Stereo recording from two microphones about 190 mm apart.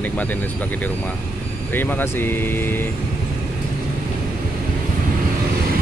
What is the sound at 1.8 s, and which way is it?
Speech, 10° left (ahead or behind).